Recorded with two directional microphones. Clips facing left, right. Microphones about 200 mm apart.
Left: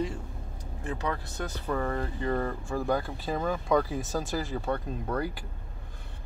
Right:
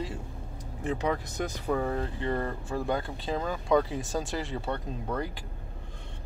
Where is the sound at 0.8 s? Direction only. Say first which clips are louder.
Right 4 dB; 15° right (ahead or behind); by 5.2 s centre (ahead or behind).